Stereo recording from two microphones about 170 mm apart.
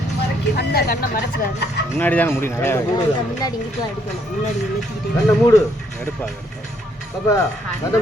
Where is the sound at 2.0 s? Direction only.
10° left (ahead or behind).